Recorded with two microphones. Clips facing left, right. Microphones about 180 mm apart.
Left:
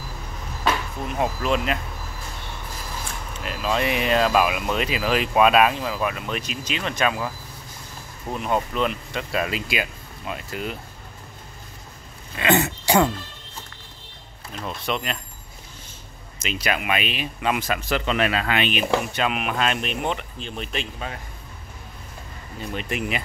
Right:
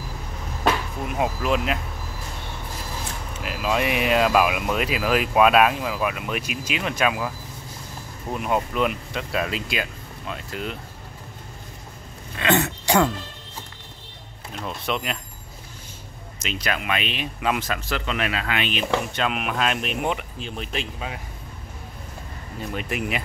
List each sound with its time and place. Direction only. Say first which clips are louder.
1.0 s speech: even; 5° right (ahead or behind)
3.4 s speech: even; 5° right (ahead or behind)
12.4 s speech: left 1 dB; 5° left (ahead or behind)
14.6 s speech: even; centre (ahead or behind)
16.3 s speech: left 2 dB; 5° left (ahead or behind)
17.6 s speech: left 3 dB; 15° left (ahead or behind)
18.1 s speech: left 4 dB; 35° left (ahead or behind)
18.6 s speech: even; 15° left (ahead or behind); by 21.2 s 5° right (ahead or behind)
22.8 s speech: even; 5° right (ahead or behind)